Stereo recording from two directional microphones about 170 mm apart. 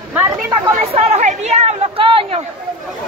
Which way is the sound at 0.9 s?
40° right (ahead or behind).